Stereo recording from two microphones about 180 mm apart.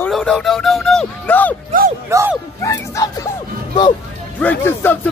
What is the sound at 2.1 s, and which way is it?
Dog, 15° right (ahead or behind).